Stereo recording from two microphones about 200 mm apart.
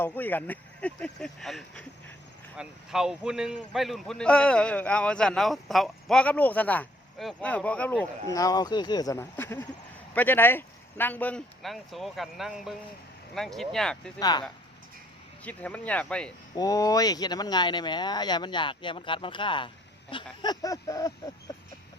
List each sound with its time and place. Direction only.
0.0 s a man's voice: 10° left (ahead or behind)
8.3 s a man's voice: 15° left (ahead or behind)
14.2 s speech: 20° left (ahead or behind)
15.4 s speech: 5° left (ahead or behind)
16.6 s speech: 15° left (ahead or behind)